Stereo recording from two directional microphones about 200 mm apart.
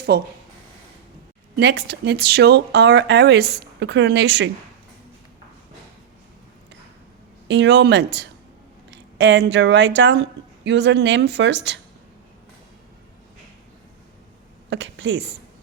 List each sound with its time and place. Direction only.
0.1 s speech: 55° right (ahead or behind)
1.5 s speech: 55° right (ahead or behind)
7.4 s speech: 65° right (ahead or behind)
14.7 s a woman's voice: 65° right (ahead or behind)